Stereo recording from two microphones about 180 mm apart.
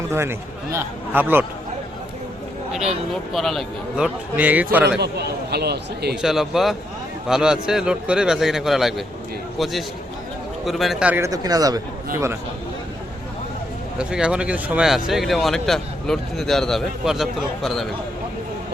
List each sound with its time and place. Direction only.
0.1 s a man's voice: 15° right (ahead or behind)
3.3 s speech: centre (ahead or behind)
4.9 s speech: 65° right (ahead or behind)
6.2 s speech: centre (ahead or behind)
11.3 s a man's voice: 20° right (ahead or behind)
14.0 s speech: 5° right (ahead or behind)